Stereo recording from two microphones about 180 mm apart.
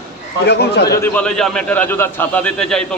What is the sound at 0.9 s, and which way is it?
A man's voice, 10° left (ahead or behind).